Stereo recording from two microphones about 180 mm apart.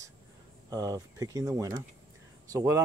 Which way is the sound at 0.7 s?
20° right (ahead or behind).